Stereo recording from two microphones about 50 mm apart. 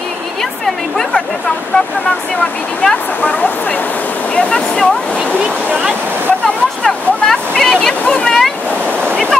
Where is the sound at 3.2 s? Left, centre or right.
Left.